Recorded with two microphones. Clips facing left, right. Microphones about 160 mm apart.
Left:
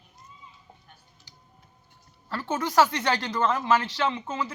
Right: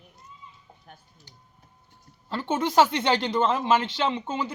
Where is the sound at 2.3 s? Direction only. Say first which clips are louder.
Right 3 dB; 25° right (ahead or behind).